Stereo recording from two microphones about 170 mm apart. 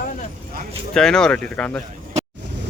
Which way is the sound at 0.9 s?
5° left (ahead or behind).